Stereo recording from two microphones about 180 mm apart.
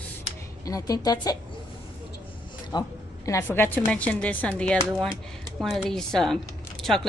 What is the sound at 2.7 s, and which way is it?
Speech, 25° left (ahead or behind).